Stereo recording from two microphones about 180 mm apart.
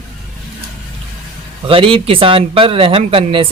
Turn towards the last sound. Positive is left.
turn(degrees=-30)  # may be behind; listen again after turning